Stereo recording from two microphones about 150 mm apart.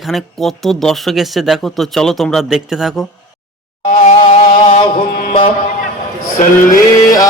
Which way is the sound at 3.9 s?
45° left (ahead or behind).